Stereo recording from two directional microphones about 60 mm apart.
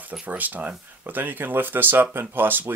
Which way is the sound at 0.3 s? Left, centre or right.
Right.